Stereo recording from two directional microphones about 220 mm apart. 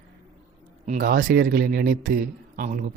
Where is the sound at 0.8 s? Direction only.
35° right (ahead or behind).